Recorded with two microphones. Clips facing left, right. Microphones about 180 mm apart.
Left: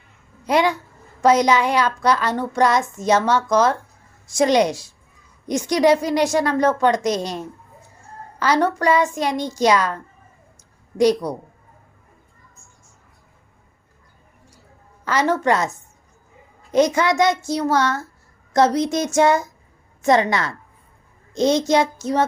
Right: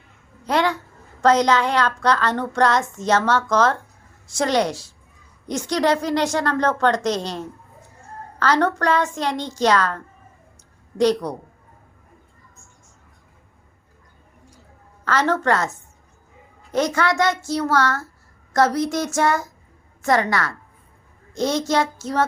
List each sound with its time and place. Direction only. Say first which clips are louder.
0.4 s speech: left 2 dB; 10° left (ahead or behind)
15.0 s speech: left 1 dB; 10° left (ahead or behind)
16.7 s speech: left 3 dB; 15° left (ahead or behind)